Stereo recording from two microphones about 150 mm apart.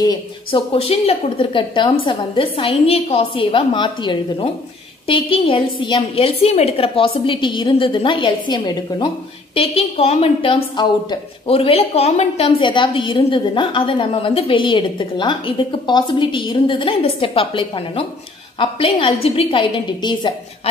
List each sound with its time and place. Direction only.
0.0 s a woman's voice: 30° left (ahead or behind)
9.6 s a woman's voice: 40° left (ahead or behind)